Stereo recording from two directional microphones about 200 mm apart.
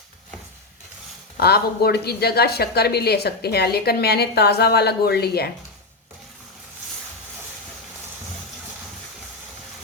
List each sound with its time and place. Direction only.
1.4 s a woman's voice: 50° left (ahead or behind)